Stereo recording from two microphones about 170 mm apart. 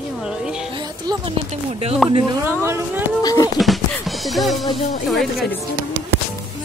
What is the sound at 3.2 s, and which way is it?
Speech, 20° left (ahead or behind).